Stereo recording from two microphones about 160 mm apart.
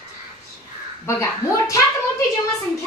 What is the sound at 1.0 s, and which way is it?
Speech, 20° left (ahead or behind).